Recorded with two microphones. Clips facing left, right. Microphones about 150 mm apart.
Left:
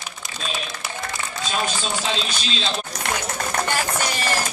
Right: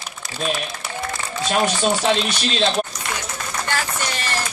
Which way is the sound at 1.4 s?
65° right (ahead or behind).